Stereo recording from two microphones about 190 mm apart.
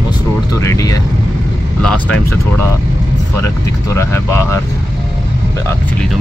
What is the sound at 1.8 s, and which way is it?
Speech, 5° left (ahead or behind).